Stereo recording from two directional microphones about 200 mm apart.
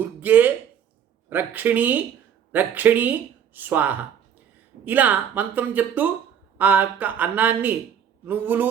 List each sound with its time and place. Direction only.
0.0 s speech: 10° right (ahead or behind)